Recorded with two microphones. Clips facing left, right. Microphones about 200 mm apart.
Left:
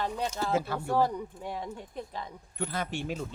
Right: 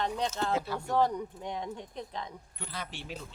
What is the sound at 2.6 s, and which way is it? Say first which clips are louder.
Speech: left 9 dB; 50° left (ahead or behind).